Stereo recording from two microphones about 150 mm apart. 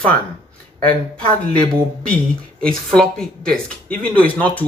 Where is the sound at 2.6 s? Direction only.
5° left (ahead or behind).